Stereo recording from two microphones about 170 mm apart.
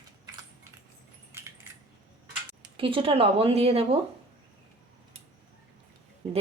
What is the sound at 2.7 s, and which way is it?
Speech, 30° right (ahead or behind).